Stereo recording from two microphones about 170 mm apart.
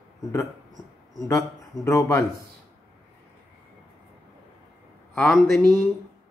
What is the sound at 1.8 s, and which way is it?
Speech, 15° left (ahead or behind).